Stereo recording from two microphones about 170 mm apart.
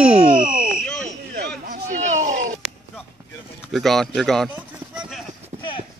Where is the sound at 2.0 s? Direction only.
45° right (ahead or behind).